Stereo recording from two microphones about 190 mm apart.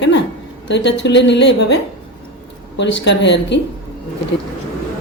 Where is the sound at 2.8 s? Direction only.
65° left (ahead or behind).